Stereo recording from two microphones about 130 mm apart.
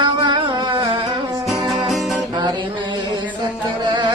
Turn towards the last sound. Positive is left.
turn(degrees=-35)  # may be behind; listen again after turning